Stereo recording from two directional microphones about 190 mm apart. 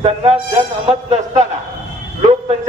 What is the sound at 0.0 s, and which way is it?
Speech, 30° right (ahead or behind).